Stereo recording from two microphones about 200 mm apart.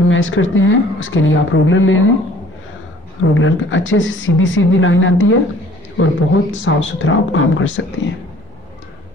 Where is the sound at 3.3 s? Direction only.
75° left (ahead or behind).